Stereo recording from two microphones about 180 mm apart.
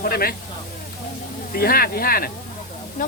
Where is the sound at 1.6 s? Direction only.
55° left (ahead or behind).